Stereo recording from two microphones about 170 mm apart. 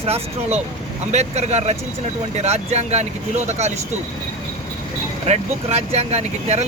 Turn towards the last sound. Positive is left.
turn(degrees=-40)  # may be behind; listen again after turning